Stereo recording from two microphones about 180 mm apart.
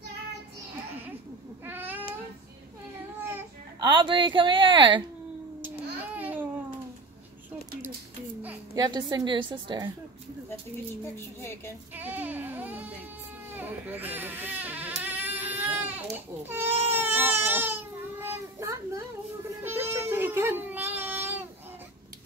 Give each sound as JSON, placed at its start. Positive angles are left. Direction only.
{"t": 1.7, "sound": "babbling", "side_deg": -10}
{"t": 3.3, "sound": "speech", "side_deg": -25}
{"t": 6.1, "sound": "babbling", "side_deg": -10}
{"t": 8.7, "sound": "a woman's voice", "side_deg": -25}
{"t": 11.1, "sound": "a woman's voice", "side_deg": 15}
{"t": 11.9, "sound": "a sound", "side_deg": -10}
{"t": 13.6, "sound": "baby cry", "side_deg": -10}
{"t": 18.2, "sound": "a sound", "side_deg": -15}
{"t": 19.6, "sound": "music", "side_deg": -10}